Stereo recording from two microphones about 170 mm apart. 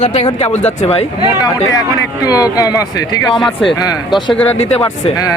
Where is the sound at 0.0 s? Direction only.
40° left (ahead or behind).